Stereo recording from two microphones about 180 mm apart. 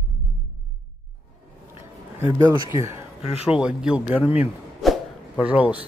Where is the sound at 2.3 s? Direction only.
15° right (ahead or behind).